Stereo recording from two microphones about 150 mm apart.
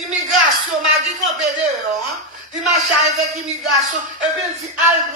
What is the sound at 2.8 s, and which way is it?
Music, 50° right (ahead or behind).